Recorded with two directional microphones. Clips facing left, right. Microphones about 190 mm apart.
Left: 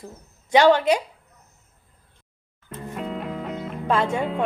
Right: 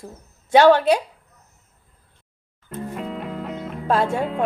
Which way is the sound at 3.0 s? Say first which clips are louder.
Left 3 dB; centre (ahead or behind).